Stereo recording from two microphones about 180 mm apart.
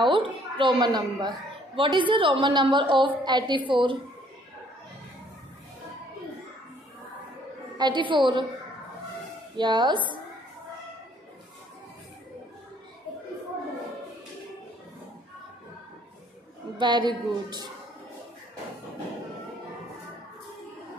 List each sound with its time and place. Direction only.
0.0 s a woman's voice: 25° right (ahead or behind)
7.7 s a woman's voice: 25° right (ahead or behind)
9.6 s a woman's voice: 25° right (ahead or behind)
16.7 s a woman's voice: 25° right (ahead or behind)